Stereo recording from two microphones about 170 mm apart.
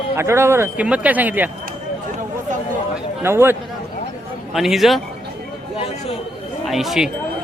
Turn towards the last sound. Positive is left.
turn(degrees=0)  # may be behind; listen again after turning